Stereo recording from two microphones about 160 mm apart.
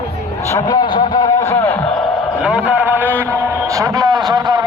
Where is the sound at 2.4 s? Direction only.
5° right (ahead or behind).